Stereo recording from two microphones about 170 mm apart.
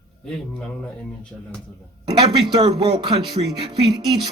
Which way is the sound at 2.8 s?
25° right (ahead or behind).